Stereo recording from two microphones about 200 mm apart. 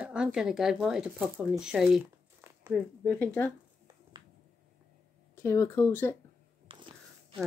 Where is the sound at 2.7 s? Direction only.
5° left (ahead or behind).